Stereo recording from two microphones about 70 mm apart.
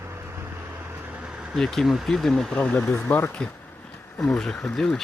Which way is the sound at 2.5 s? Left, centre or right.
Centre.